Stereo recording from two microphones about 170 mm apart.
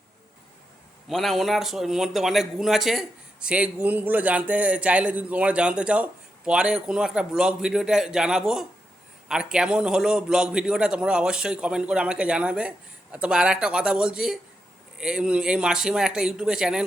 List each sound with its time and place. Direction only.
1.0 s a man's voice: centre (ahead or behind)